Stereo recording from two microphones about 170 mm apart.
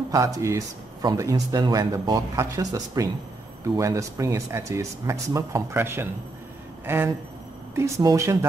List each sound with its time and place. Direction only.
0.1 s speech: 20° right (ahead or behind)